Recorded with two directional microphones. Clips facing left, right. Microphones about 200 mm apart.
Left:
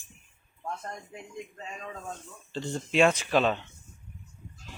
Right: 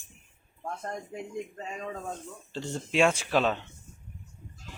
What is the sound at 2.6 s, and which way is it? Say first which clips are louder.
A man's voice: left 1 dB; 10° right (ahead or behind).